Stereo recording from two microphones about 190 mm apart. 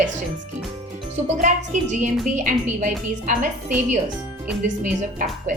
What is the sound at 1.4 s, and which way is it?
A woman's voice, 40° right (ahead or behind).